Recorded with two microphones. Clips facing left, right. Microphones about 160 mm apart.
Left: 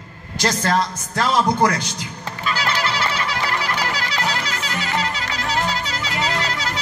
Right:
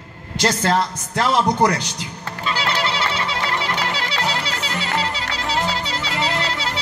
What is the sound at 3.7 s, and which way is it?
Music, 25° right (ahead or behind).